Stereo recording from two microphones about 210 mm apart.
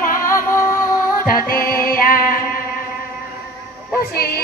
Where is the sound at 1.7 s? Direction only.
45° left (ahead or behind).